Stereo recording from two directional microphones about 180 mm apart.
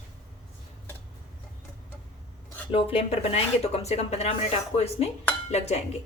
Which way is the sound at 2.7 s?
35° left (ahead or behind).